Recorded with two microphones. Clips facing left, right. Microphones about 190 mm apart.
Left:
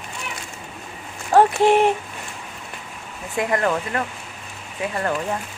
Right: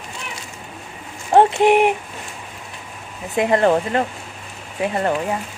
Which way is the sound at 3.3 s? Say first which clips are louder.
Right 6 dB; 30° right (ahead or behind).